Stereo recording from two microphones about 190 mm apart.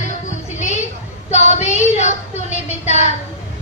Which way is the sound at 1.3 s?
35° left (ahead or behind).